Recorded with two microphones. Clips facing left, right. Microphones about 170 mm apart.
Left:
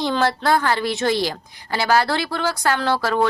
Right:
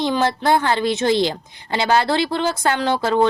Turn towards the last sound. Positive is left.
turn(degrees=-20)  # may be behind; listen again after turning